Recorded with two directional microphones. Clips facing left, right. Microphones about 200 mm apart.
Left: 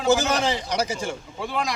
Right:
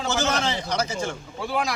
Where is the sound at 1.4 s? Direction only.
5° right (ahead or behind).